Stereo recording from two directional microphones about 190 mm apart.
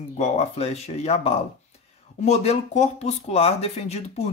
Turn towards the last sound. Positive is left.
turn(degrees=35)  # may be behind; listen again after turning